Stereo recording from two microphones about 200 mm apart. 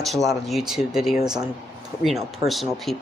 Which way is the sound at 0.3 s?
Centre (ahead or behind).